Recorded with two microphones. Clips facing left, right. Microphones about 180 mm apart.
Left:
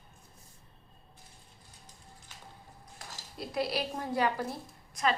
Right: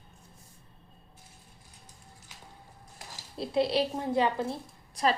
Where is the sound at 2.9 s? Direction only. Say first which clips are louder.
Right 5 dB; 25° right (ahead or behind).